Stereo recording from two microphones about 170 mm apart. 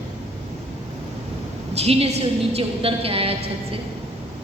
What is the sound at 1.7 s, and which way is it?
A woman's voice, 35° right (ahead or behind).